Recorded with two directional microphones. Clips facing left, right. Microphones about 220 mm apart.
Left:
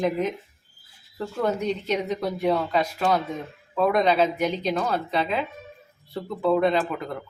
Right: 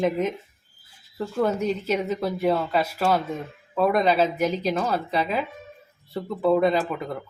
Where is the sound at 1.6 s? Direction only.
5° right (ahead or behind).